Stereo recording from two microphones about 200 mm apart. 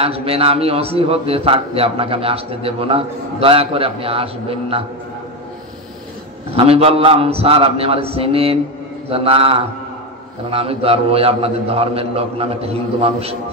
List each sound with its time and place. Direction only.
0.0 s a man's voice: 30° right (ahead or behind)
6.5 s a man's voice: 30° right (ahead or behind)